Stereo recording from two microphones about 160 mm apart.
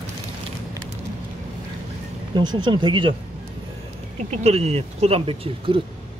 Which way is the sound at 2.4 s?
30° right (ahead or behind).